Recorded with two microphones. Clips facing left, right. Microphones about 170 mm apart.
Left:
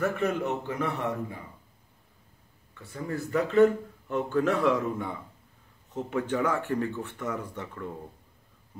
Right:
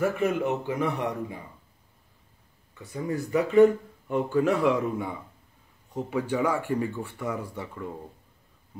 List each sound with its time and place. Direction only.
0.0 s speech: 10° right (ahead or behind)
2.8 s speech: 15° right (ahead or behind)